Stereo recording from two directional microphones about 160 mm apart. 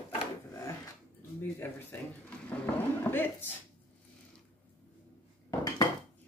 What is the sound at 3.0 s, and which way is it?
Speech, 15° left (ahead or behind).